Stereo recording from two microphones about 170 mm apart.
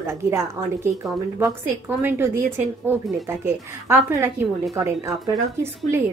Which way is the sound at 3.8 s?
15° right (ahead or behind).